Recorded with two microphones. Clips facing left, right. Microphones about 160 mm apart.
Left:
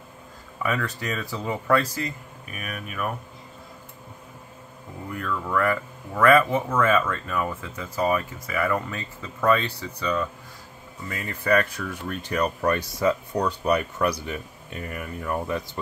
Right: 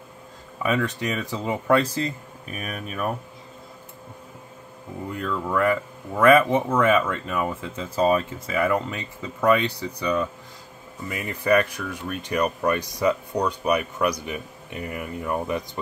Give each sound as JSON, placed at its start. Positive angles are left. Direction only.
{"t": 0.6, "sound": "speech", "side_deg": -20}
{"t": 5.1, "sound": "speech", "side_deg": -20}